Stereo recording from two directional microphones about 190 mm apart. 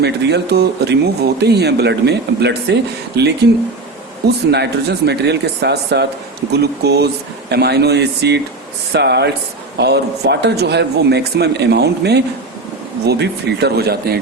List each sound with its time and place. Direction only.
0.0 s speech: 60° right (ahead or behind)
4.5 s speech: 60° right (ahead or behind)